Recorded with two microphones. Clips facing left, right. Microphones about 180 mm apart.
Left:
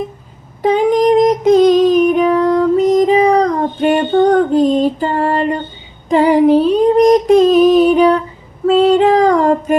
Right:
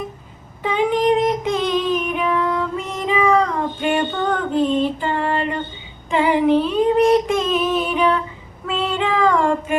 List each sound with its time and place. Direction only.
0.6 s child singing: 40° left (ahead or behind)
6.1 s female singing: 40° left (ahead or behind)